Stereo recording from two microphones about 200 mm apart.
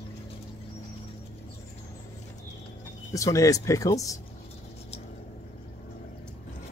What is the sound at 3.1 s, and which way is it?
Speech, 15° left (ahead or behind).